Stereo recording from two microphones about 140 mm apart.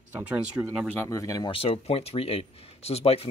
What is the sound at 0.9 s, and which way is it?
Speech, 20° left (ahead or behind).